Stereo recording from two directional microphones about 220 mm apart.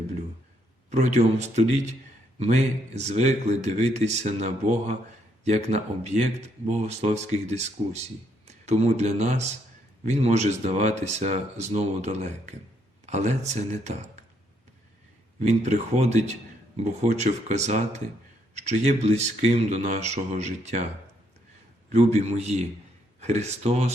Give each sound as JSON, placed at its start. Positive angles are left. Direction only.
{"t": 0.9, "sound": "speech", "side_deg": -30}
{"t": 15.4, "sound": "speech", "side_deg": -30}
{"t": 21.9, "sound": "a man's voice", "side_deg": -30}